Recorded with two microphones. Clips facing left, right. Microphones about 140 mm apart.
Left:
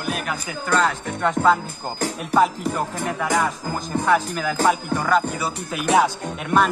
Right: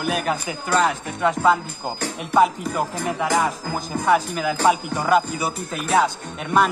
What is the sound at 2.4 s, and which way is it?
Speech, 5° right (ahead or behind).